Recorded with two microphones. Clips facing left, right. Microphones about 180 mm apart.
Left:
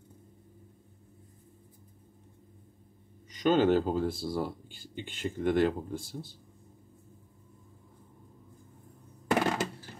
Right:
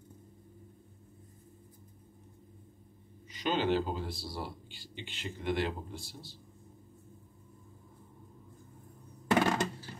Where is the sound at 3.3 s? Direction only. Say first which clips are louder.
Left 6 dB; 45° left (ahead or behind).